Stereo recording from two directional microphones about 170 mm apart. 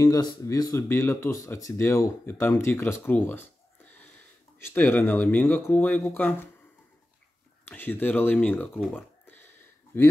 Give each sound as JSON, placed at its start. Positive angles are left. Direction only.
{"t": 0.0, "sound": "speech", "side_deg": 20}
{"t": 4.7, "sound": "speech", "side_deg": 10}
{"t": 7.6, "sound": "speech", "side_deg": 10}
{"t": 9.9, "sound": "speech", "side_deg": 15}